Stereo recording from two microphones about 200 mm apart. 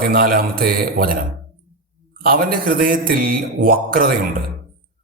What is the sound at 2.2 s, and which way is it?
A man's voice, 45° right (ahead or behind).